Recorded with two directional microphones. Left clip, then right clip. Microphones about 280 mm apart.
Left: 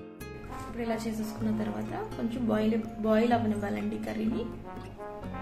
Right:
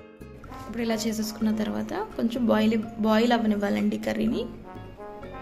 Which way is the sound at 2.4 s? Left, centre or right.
Right.